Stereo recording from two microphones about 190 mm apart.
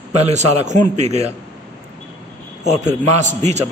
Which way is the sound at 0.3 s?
40° right (ahead or behind).